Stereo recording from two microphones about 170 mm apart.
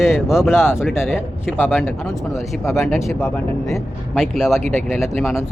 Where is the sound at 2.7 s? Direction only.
Centre (ahead or behind).